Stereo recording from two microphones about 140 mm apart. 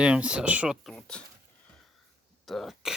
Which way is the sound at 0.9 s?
5° left (ahead or behind).